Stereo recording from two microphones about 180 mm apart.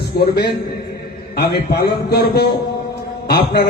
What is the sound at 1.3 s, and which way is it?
A man's voice, 65° left (ahead or behind).